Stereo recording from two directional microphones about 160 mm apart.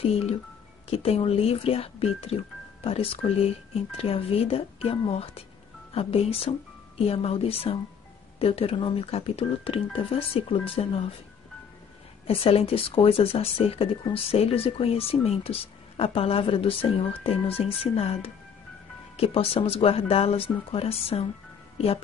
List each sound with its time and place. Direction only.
0.0 s speech: 40° left (ahead or behind)
12.3 s speech: 35° left (ahead or behind)